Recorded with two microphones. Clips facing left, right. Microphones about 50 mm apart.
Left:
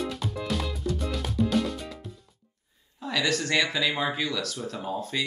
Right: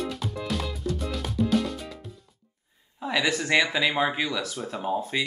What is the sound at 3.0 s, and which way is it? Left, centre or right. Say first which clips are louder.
Speech: right 1 dB; centre.